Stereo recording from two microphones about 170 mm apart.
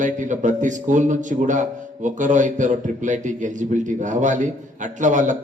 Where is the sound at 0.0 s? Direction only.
50° right (ahead or behind).